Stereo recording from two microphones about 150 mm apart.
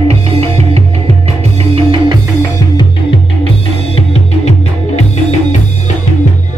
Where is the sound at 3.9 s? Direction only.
45° left (ahead or behind).